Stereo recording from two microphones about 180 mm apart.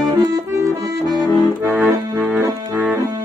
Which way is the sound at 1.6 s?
10° right (ahead or behind).